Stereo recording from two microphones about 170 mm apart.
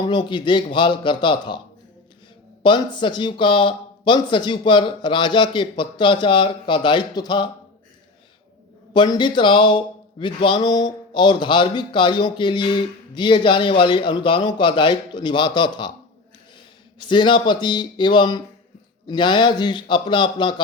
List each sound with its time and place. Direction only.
0.0 s speech: 25° left (ahead or behind)
2.6 s speech: 30° left (ahead or behind)
8.9 s speech: 25° left (ahead or behind)
17.0 s speech: 25° left (ahead or behind)